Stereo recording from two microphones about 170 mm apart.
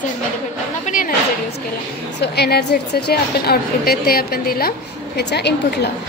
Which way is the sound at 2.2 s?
70° left (ahead or behind).